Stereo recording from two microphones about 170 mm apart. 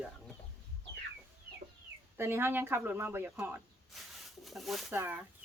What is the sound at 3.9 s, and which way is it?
Speech, centre (ahead or behind).